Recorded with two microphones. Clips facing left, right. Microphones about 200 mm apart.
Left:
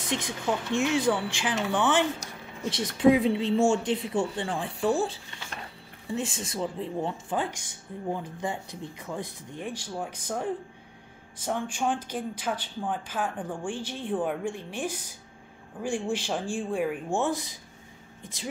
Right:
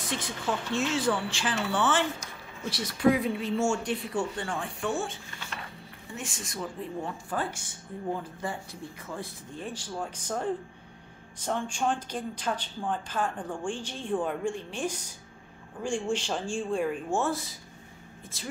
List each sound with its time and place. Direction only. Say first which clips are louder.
0.1 s speech: left 3 dB; 20° left (ahead or behind)